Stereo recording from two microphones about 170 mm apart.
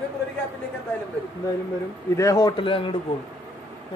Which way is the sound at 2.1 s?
20° left (ahead or behind).